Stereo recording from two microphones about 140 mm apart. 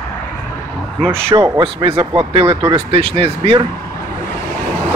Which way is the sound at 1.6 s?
40° right (ahead or behind).